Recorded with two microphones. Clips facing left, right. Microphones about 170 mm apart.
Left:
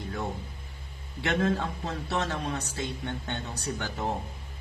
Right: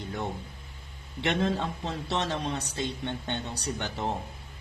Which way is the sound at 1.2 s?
20° right (ahead or behind).